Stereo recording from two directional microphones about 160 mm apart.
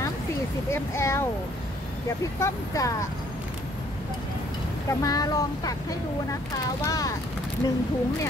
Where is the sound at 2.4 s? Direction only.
20° left (ahead or behind).